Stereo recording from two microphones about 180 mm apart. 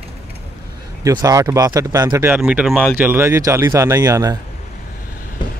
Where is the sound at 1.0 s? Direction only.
20° right (ahead or behind).